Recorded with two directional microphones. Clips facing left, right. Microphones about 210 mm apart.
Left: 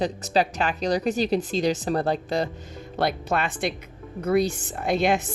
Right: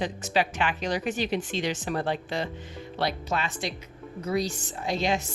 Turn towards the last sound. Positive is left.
turn(degrees=55)  # may be behind; listen again after turning